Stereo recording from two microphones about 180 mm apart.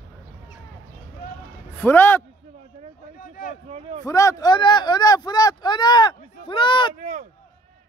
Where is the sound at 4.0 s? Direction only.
20° left (ahead or behind).